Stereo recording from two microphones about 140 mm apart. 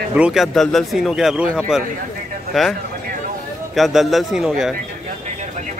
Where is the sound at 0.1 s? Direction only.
5° right (ahead or behind).